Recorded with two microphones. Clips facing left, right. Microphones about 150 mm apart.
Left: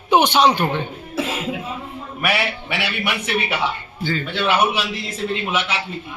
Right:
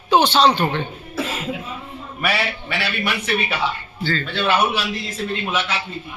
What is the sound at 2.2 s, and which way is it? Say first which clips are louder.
A man's voice: left 1 dB; 15° left (ahead or behind).